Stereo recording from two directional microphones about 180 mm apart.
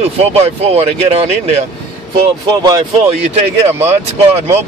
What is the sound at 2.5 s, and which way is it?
Speech, 20° right (ahead or behind).